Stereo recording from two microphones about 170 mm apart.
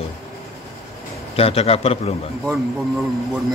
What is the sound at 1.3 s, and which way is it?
Speech, 35° left (ahead or behind).